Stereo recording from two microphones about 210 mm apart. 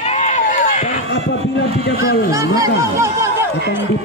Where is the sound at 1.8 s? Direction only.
50° left (ahead or behind).